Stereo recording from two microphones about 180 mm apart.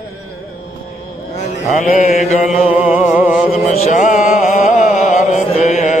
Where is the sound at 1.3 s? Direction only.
40° left (ahead or behind).